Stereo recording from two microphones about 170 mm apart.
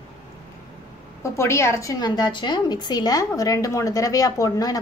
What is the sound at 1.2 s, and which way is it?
A woman's voice, 15° left (ahead or behind).